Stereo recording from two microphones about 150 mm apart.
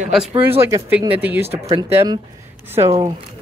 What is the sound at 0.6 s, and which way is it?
Speech, 15° right (ahead or behind).